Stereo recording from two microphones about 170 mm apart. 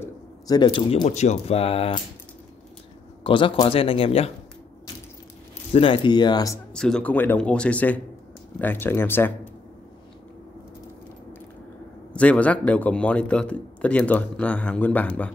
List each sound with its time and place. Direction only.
0.0 s a sound: 20° left (ahead or behind)
0.7 s a man's voice: 30° left (ahead or behind)
3.3 s a man's voice: 30° left (ahead or behind)
5.7 s speech: 30° left (ahead or behind)
6.7 s a man's voice: 5° left (ahead or behind)
12.1 s a man's voice: 5° left (ahead or behind)